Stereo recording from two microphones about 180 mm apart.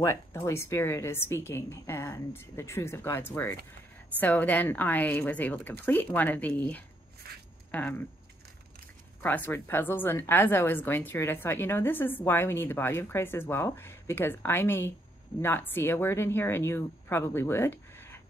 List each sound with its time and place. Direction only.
0.0 s a woman's voice: 15° left (ahead or behind)
7.2 s speech: 60° right (ahead or behind)
7.7 s a woman's voice: 10° left (ahead or behind)
9.2 s a woman's voice: 10° left (ahead or behind)